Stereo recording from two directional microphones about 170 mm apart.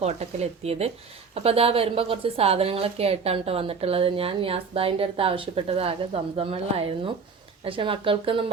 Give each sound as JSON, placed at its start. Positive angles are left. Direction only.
{"t": 0.0, "sound": "a woman's voice", "side_deg": -40}